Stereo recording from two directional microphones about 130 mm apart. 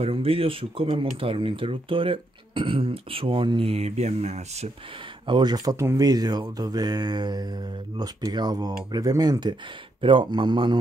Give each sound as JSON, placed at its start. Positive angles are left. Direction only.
{"t": 0.0, "sound": "speech", "side_deg": -45}
{"t": 5.2, "sound": "speech", "side_deg": -35}